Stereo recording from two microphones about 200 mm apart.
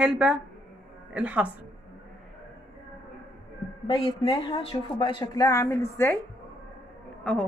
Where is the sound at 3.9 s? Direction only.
25° left (ahead or behind).